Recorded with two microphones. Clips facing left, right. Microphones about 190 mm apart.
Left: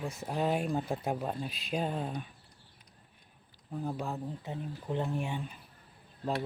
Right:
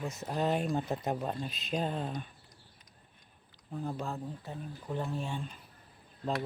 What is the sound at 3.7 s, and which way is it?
Speech, 10° left (ahead or behind).